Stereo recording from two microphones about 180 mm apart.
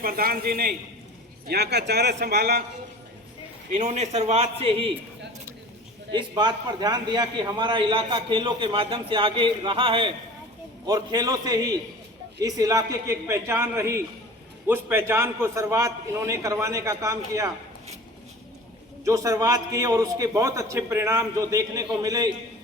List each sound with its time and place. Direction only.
0.0 s speech: 55° right (ahead or behind)
3.7 s a man's voice: 40° right (ahead or behind)
6.1 s a man's voice: 25° right (ahead or behind)
19.0 s a man's voice: 15° right (ahead or behind)